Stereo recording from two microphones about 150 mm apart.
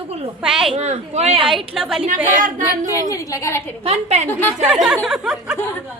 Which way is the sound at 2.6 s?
20° left (ahead or behind).